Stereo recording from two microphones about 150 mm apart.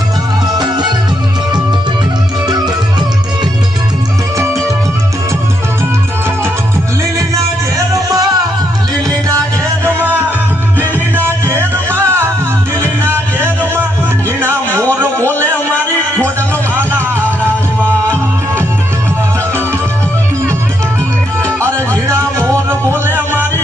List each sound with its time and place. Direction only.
0.5 s music: 30° right (ahead or behind)
7.9 s music: 25° right (ahead or behind)
9.8 s music: 15° right (ahead or behind)
22.0 s music: 20° right (ahead or behind)